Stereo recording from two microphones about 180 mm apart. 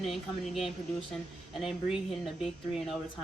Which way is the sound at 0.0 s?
Centre (ahead or behind).